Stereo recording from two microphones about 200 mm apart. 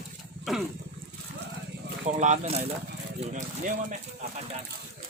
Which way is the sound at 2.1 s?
35° right (ahead or behind).